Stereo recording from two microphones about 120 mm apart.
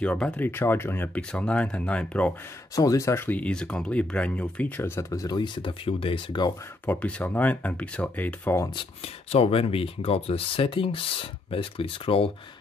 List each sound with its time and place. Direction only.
0.0 s speech: 10° left (ahead or behind)
2.7 s speech: 30° left (ahead or behind)
6.9 s speech: 10° left (ahead or behind)
8.7 s speech: 55° left (ahead or behind)